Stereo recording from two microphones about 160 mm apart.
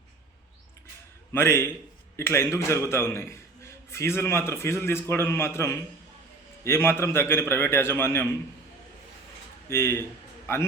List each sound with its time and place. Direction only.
1.3 s a man's voice: 15° left (ahead or behind)
9.6 s a man's voice: 15° left (ahead or behind)